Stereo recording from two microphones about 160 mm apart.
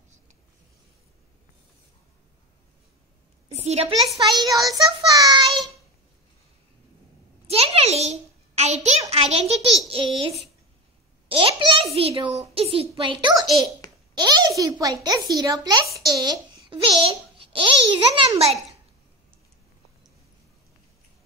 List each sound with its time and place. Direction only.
3.4 s a woman's voice: 40° right (ahead or behind)
4.3 s child singing: 25° right (ahead or behind)
7.4 s a sound: 40° right (ahead or behind)
9.1 s a child's voice: 40° right (ahead or behind); by 15.0 s 20° right (ahead or behind)
15.0 s child singing: 25° right (ahead or behind)
16.1 s a child's voice: 25° right (ahead or behind)